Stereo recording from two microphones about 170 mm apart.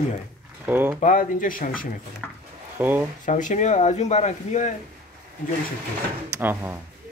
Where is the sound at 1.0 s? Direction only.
50° left (ahead or behind).